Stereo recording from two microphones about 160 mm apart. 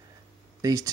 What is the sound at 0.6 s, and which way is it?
Speech, 20° right (ahead or behind).